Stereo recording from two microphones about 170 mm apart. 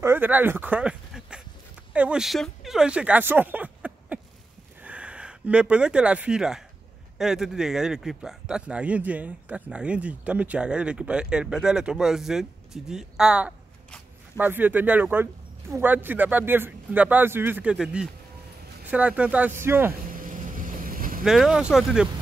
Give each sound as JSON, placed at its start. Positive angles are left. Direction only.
{"t": 0.0, "sound": "a sound", "side_deg": -10}
{"t": 2.0, "sound": "speech", "side_deg": -5}
{"t": 20.1, "sound": "boat", "side_deg": -55}
{"t": 21.2, "sound": "speech", "side_deg": 0}